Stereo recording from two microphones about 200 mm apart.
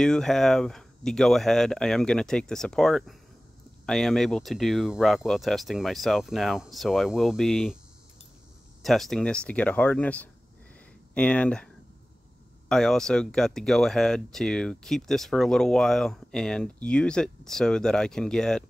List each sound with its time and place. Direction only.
0.0 s speech: 5° left (ahead or behind)
8.8 s speech: centre (ahead or behind)